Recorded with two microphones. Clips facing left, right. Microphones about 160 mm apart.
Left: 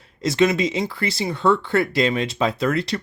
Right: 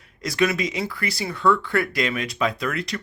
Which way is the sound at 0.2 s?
25° left (ahead or behind).